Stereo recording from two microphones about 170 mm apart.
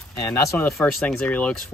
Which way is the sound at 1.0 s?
5° left (ahead or behind).